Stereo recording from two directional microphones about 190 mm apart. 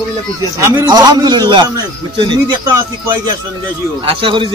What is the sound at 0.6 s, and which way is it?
A man's voice, 20° right (ahead or behind).